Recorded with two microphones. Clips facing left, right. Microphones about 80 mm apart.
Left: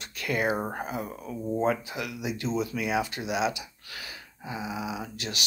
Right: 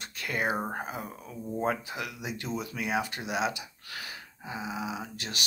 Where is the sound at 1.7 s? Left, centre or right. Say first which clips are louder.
Left 3 dB; right.